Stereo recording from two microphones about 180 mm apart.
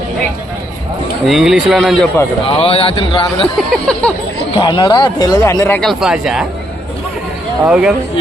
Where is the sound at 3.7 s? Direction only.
5° left (ahead or behind).